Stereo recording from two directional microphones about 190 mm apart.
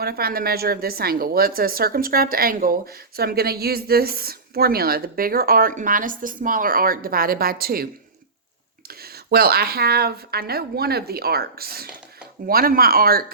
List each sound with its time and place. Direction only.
0.0 s speech: 55° right (ahead or behind)
8.9 s speech: 55° right (ahead or behind)